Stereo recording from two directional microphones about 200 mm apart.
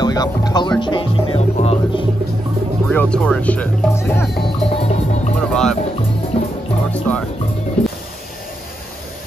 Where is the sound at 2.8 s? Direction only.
5° left (ahead or behind).